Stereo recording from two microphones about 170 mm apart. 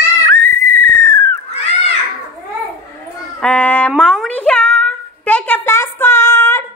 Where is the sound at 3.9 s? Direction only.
Centre (ahead or behind).